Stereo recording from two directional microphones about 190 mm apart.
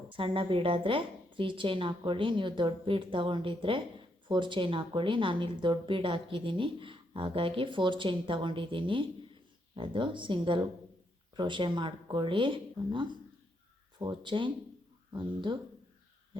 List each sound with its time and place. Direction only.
0.1 s speech: 25° right (ahead or behind)